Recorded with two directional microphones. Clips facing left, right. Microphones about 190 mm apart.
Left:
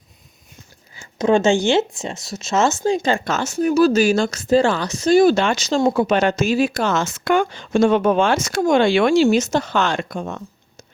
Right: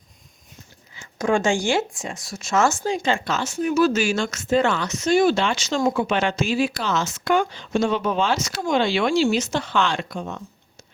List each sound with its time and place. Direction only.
1.2 s speech: 25° left (ahead or behind)
2.8 s speech: 40° left (ahead or behind)